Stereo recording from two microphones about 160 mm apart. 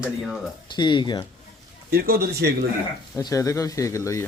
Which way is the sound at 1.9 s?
70° right (ahead or behind).